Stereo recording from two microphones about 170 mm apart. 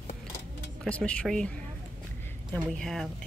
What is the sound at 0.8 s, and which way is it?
Speech, 5° left (ahead or behind).